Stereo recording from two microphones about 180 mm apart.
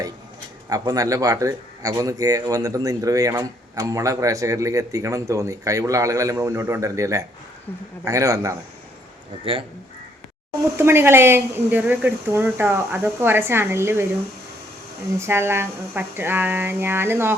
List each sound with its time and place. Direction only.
0.7 s speech: 20° right (ahead or behind)
9.4 s speech: 30° right (ahead or behind)
10.8 s speech: 15° right (ahead or behind)
15.2 s speech: 15° right (ahead or behind)